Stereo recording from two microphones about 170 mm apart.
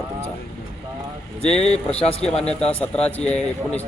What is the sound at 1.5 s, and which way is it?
Speech, 40° left (ahead or behind).